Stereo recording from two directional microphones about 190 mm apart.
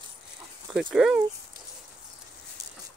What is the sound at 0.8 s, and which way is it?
Speech, centre (ahead or behind).